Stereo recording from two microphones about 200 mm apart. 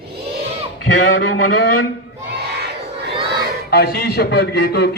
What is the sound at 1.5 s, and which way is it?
Speech, 50° left (ahead or behind).